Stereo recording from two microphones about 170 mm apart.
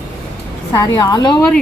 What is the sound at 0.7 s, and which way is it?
Speech, 20° left (ahead or behind).